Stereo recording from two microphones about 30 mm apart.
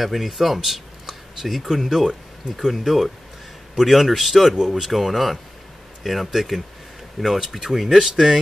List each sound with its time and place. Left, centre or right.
0.0 s a man's voice: centre
4.6 s speech: right
4.8 s a man's voice: centre